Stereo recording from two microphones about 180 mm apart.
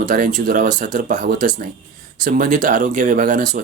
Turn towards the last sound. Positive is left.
turn(degrees=-45)  # may be behind; listen again after turning